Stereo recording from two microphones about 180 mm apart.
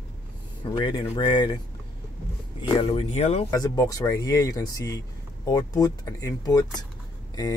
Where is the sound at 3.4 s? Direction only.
20° left (ahead or behind).